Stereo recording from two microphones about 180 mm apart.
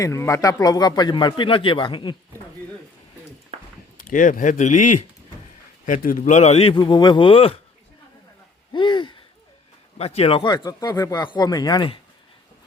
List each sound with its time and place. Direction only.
0.0 s speech: 15° left (ahead or behind)
3.9 s a man's voice: 45° left (ahead or behind); by 7.6 s 30° left (ahead or behind)
8.7 s a sound: 25° left (ahead or behind)
10.0 s speech: 35° left (ahead or behind)